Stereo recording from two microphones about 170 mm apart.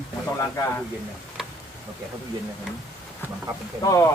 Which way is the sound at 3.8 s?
20° left (ahead or behind).